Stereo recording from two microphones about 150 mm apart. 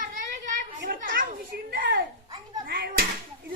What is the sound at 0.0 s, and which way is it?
Children playing, 60° right (ahead or behind).